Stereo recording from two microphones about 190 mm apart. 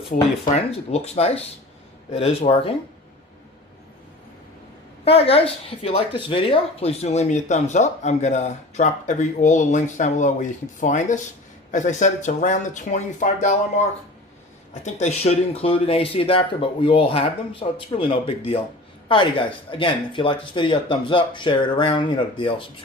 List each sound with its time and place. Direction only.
0.1 s speech: 40° left (ahead or behind)
5.0 s speech: 30° left (ahead or behind)
14.7 s a woman's voice: 35° left (ahead or behind)